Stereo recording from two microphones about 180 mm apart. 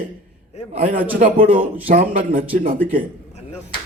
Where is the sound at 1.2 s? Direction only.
50° right (ahead or behind).